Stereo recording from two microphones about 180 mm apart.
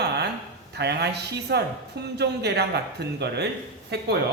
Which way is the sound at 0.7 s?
65° right (ahead or behind).